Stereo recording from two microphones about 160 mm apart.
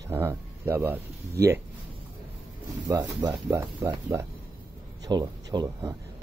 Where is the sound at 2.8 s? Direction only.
25° right (ahead or behind).